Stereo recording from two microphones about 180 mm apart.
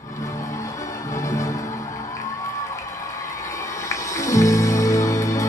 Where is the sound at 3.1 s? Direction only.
15° left (ahead or behind).